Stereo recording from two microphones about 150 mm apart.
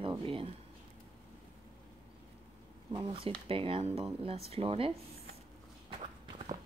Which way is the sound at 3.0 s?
40° right (ahead or behind).